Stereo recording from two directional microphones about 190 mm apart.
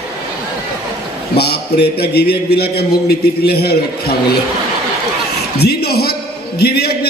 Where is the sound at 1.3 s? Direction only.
55° left (ahead or behind).